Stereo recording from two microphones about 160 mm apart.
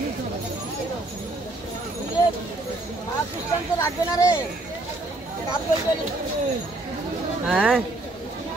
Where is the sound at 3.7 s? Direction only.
20° left (ahead or behind).